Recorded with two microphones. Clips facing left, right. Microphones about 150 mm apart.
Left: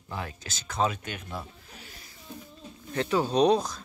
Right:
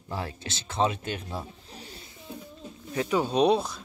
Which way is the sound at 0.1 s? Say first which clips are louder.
Right 3 dB; 30° right (ahead or behind).